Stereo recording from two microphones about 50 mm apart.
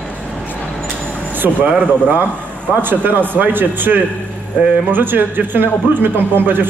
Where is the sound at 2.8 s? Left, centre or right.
Right.